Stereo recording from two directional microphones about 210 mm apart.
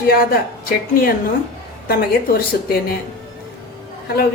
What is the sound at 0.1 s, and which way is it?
A woman's voice, 45° left (ahead or behind).